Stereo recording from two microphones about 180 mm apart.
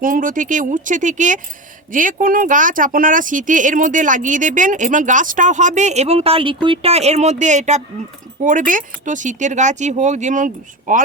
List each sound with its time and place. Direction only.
0.0 s speech: 50° right (ahead or behind)